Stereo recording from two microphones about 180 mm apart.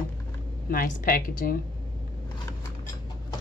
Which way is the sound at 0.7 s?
55° left (ahead or behind).